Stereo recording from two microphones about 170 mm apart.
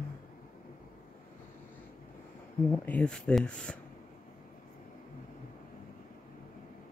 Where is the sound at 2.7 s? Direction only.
5° left (ahead or behind).